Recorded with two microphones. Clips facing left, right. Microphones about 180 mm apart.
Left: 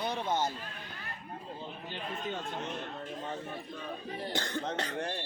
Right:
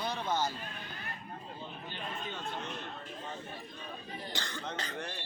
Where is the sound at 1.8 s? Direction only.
40° left (ahead or behind).